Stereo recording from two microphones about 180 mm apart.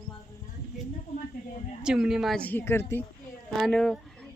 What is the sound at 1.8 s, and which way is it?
Speech, 5° right (ahead or behind).